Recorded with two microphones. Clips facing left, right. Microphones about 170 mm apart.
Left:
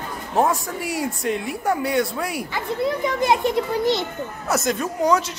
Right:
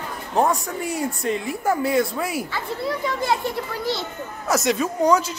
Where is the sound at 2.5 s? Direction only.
20° left (ahead or behind).